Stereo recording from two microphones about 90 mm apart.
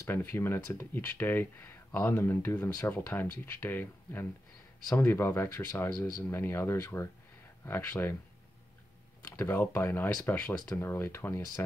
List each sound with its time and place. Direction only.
0.0 s speech: 25° left (ahead or behind)
9.4 s speech: 25° left (ahead or behind)
10.8 s speech: 25° left (ahead or behind)